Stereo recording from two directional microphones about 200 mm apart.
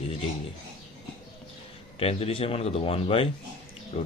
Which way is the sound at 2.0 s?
30° left (ahead or behind).